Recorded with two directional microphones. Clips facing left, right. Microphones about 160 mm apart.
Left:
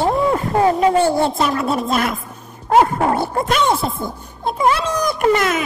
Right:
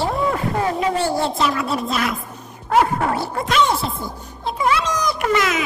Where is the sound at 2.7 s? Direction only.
35° left (ahead or behind).